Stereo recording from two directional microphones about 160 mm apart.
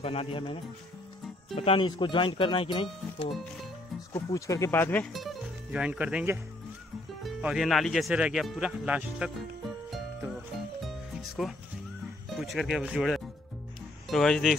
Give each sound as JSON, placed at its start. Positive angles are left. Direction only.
{"t": 0.0, "sound": "speech", "side_deg": 35}
{"t": 4.1, "sound": "speech", "side_deg": 20}
{"t": 5.0, "sound": "speech", "side_deg": 0}
{"t": 9.8, "sound": "music", "side_deg": 0}
{"t": 12.4, "sound": "speech", "side_deg": 0}